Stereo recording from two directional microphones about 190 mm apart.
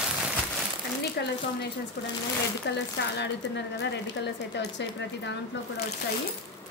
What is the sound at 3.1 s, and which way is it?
A woman's voice, 65° left (ahead or behind).